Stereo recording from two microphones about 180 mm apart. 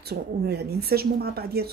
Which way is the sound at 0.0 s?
60° right (ahead or behind).